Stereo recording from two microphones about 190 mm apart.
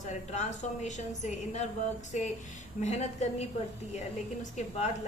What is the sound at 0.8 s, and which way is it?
A woman's voice, 40° left (ahead or behind).